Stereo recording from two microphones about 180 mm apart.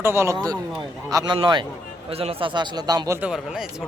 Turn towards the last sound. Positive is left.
turn(degrees=-5)  # may be behind; listen again after turning